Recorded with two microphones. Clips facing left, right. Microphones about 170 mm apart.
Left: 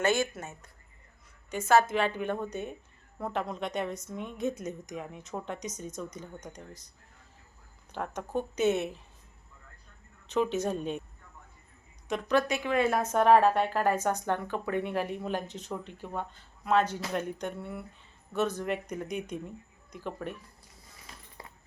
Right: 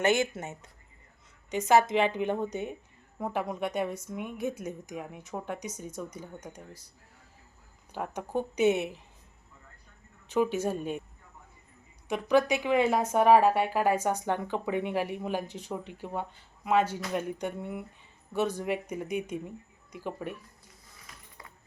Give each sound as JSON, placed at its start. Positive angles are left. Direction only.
{"t": 0.0, "sound": "a woman's voice", "side_deg": -20}
{"t": 7.9, "sound": "a woman's voice", "side_deg": -10}
{"t": 10.2, "sound": "a woman's voice", "side_deg": -10}
{"t": 12.0, "sound": "a woman's voice", "side_deg": -10}